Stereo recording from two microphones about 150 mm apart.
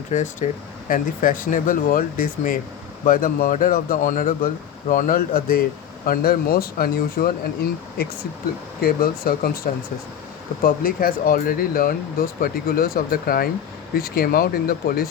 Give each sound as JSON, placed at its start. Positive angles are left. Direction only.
{"t": 0.1, "sound": "speech", "side_deg": 55}
{"t": 0.9, "sound": "speech", "side_deg": 65}
{"t": 10.6, "sound": "speech", "side_deg": 70}
{"t": 14.2, "sound": "speech", "side_deg": 90}